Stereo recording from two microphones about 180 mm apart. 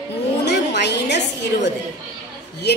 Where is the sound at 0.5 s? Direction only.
70° left (ahead or behind).